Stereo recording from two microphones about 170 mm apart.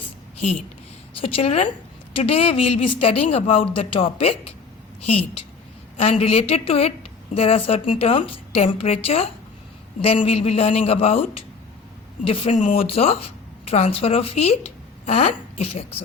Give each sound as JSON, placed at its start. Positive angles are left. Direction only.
{"t": 1.1, "sound": "a woman's voice", "side_deg": 35}